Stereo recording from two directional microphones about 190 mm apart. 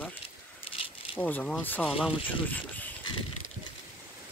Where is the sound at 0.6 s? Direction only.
30° left (ahead or behind).